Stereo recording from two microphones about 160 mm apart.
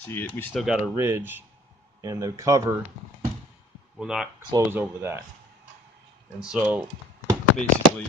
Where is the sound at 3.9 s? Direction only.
5° right (ahead or behind).